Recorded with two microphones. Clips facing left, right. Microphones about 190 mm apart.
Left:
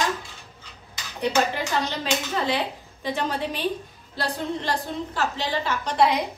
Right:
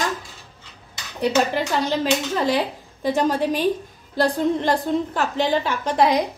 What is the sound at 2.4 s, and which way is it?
A woman's voice, 40° right (ahead or behind).